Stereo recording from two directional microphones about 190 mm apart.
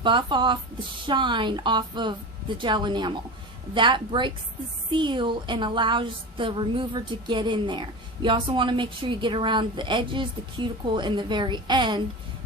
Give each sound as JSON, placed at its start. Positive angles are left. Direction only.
{"t": 0.0, "sound": "a woman's voice", "side_deg": -25}